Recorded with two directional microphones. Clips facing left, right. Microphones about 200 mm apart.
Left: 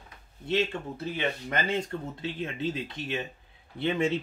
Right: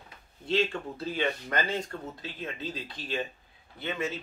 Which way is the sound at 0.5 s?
20° left (ahead or behind).